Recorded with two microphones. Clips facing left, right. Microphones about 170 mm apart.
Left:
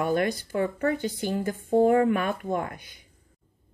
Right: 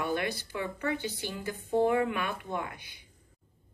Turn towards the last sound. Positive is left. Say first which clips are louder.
# left 5 dB
turn(degrees=45)  # may be behind; listen again after turning